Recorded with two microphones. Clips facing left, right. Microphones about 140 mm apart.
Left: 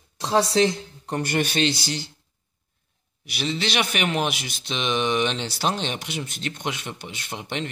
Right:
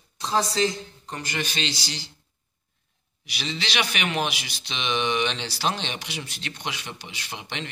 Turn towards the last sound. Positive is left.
turn(degrees=50)  # may be behind; listen again after turning